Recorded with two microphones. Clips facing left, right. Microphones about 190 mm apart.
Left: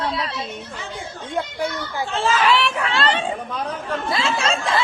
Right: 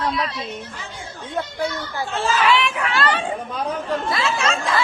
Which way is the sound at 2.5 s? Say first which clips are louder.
Even; 30° left (ahead or behind).